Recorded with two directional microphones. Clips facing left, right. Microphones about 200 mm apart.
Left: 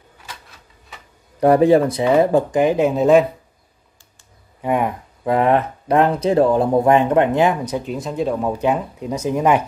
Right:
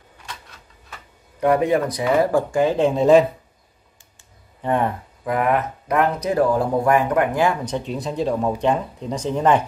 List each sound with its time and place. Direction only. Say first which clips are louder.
1.4 s speech: left 5 dB; 35° left (ahead or behind); by 2.9 s 15° left (ahead or behind)
2.9 s speech: right 2 dB; centre (ahead or behind)
4.6 s speech: left 1 dB; 10° left (ahead or behind)
5.2 s speech: left 4 dB; 30° left (ahead or behind)
7.6 s speech: left 1 dB; 5° left (ahead or behind)